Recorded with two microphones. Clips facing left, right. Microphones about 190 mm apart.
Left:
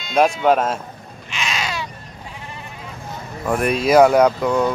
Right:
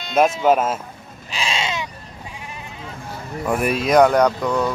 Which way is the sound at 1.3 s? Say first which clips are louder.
Right 1 dB; 30° right (ahead or behind).